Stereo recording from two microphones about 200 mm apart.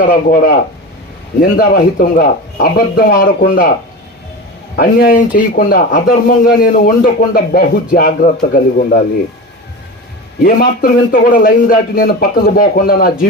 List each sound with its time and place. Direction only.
0.0 s speech: 45° left (ahead or behind)
4.8 s speech: 50° left (ahead or behind)
10.4 s speech: 50° left (ahead or behind)